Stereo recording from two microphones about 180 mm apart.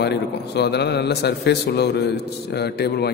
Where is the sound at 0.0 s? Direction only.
65° left (ahead or behind).